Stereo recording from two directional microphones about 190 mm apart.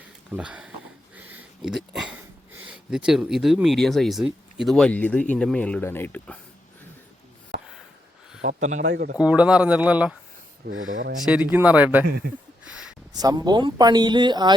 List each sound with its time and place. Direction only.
0.3 s speech: 5° right (ahead or behind)
1.1 s a sound: 5° right (ahead or behind)
2.1 s speech: 10° right (ahead or behind); by 6.4 s 5° left (ahead or behind)
8.4 s speech: 40° right (ahead or behind)
8.9 s speech: 55° right (ahead or behind)
9.1 s speech: 5° right (ahead or behind)
10.7 s speech: 90° right
11.5 s speech: 10° right (ahead or behind)
12.0 s a man's voice: 55° right (ahead or behind)
12.6 s a sound: 5° right (ahead or behind)
13.1 s speech: 20° right (ahead or behind)